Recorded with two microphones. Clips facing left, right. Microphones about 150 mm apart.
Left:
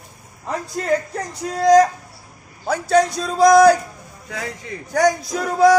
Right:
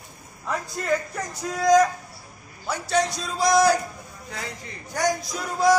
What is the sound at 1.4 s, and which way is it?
Speech, 30° left (ahead or behind).